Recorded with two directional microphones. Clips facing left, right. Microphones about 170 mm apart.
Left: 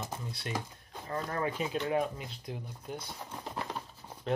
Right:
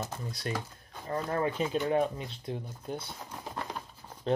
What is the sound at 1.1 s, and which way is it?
Speech, 25° right (ahead or behind).